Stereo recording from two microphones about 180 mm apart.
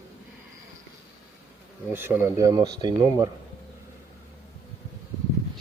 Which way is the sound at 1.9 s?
10° right (ahead or behind).